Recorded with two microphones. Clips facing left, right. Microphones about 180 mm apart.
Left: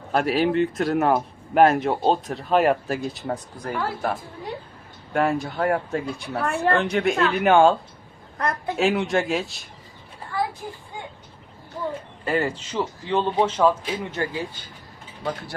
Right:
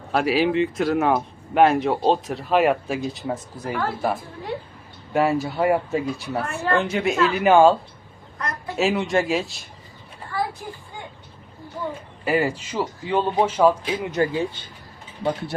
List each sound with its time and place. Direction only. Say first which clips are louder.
0.1 s speech: right 1 dB; centre (ahead or behind)
8.4 s a man's voice: left 5 dB; 60° left (ahead or behind)
8.7 s speech: right 1 dB; centre (ahead or behind)
12.2 s speech: right 3 dB; 10° right (ahead or behind); by 15.5 s 25° right (ahead or behind)